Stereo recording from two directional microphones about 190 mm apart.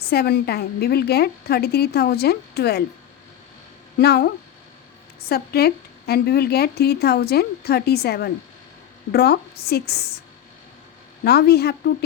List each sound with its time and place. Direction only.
0.1 s speech: 55° left (ahead or behind)
4.0 s speech: 55° left (ahead or behind)
5.3 s speech: 55° left (ahead or behind)
11.2 s speech: 55° left (ahead or behind)